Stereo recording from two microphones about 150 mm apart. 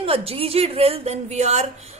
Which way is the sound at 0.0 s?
40° right (ahead or behind).